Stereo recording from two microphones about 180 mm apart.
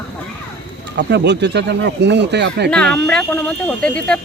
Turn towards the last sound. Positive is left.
turn(degrees=5)  # may be behind; listen again after turning